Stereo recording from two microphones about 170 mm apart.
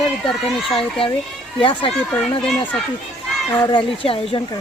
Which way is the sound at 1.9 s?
5° left (ahead or behind).